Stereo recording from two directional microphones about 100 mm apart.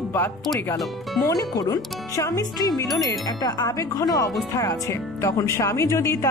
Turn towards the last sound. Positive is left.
turn(degrees=30)  # may be behind; listen again after turning